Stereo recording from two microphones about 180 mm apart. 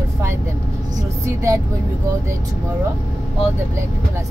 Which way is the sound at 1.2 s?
15° right (ahead or behind).